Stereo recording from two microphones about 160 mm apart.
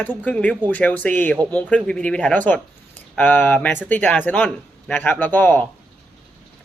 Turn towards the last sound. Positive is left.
turn(degrees=10)  # may be behind; listen again after turning